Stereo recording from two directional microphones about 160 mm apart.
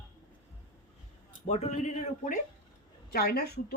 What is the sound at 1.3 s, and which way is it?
Speech, 40° left (ahead or behind).